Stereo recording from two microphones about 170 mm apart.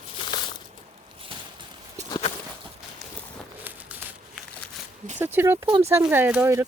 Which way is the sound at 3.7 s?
10° right (ahead or behind).